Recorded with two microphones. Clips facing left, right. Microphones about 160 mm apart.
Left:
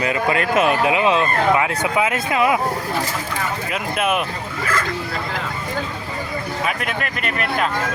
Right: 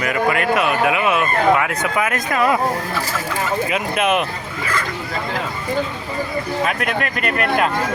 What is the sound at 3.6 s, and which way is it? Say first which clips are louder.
Speech: even; centre (ahead or behind).